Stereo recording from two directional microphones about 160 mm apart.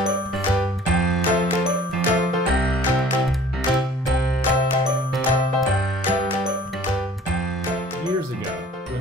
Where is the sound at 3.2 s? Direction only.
Centre (ahead or behind).